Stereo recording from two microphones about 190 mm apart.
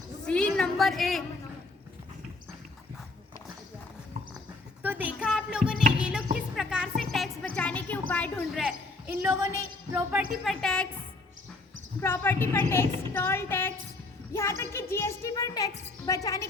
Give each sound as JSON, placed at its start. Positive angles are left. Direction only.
{"t": 0.3, "sound": "a sound", "side_deg": 5}
{"t": 4.8, "sound": "a sound", "side_deg": -10}
{"t": 6.0, "sound": "music", "side_deg": -5}
{"t": 6.6, "sound": "speech", "side_deg": -5}
{"t": 10.4, "sound": "speech", "side_deg": 5}
{"t": 12.0, "sound": "a woman's voice", "side_deg": 10}